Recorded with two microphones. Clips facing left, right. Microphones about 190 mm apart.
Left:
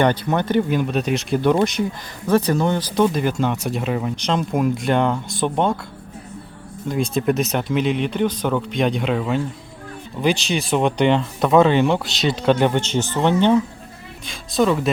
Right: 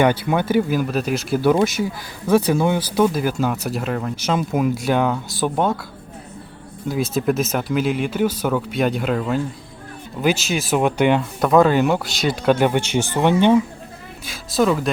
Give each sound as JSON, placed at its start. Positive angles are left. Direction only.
{"t": 0.0, "sound": "speech", "side_deg": -10}
{"t": 6.8, "sound": "speech", "side_deg": -5}